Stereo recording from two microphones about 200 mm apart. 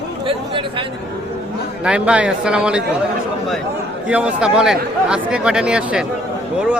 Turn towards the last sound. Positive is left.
turn(degrees=-5)  # may be behind; listen again after turning